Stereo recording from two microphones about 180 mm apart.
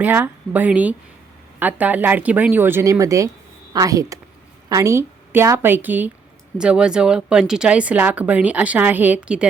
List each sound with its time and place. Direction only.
0.0 s speech: 10° right (ahead or behind)